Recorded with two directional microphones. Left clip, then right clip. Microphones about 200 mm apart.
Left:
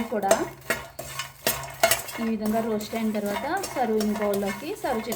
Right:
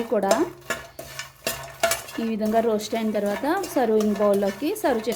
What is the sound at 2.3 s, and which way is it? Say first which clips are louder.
A woman's voice: right 6 dB; 55° right (ahead or behind).